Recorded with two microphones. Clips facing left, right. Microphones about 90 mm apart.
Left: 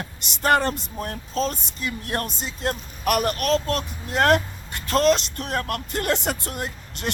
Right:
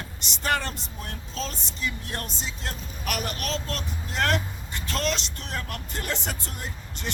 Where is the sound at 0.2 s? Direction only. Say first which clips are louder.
Left 7 dB; 50° left (ahead or behind).